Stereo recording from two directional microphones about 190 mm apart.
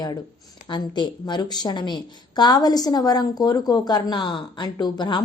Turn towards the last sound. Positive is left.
turn(degrees=20)  # may be behind; listen again after turning